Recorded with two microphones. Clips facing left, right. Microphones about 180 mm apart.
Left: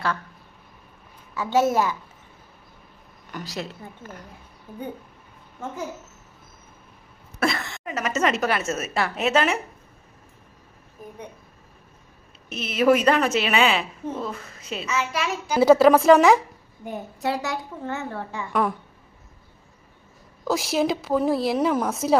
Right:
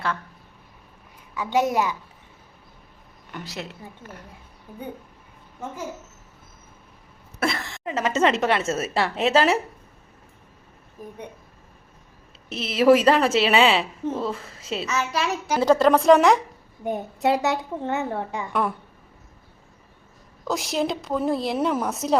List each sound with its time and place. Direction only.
1.4 s a child's voice: 15° right (ahead or behind)
3.3 s a woman's voice: 25° right (ahead or behind)
7.3 s a woman's voice: 30° right (ahead or behind)
12.5 s a woman's voice: 30° right (ahead or behind)
15.5 s a woman's voice: 5° left (ahead or behind)
16.8 s a woman's voice: 20° right (ahead or behind)
20.5 s a woman's voice: centre (ahead or behind)